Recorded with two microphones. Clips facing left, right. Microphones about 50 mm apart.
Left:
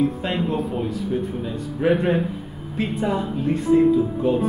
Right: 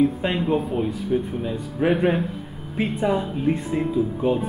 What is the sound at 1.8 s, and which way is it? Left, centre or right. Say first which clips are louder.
Speech: left 1 dB; centre.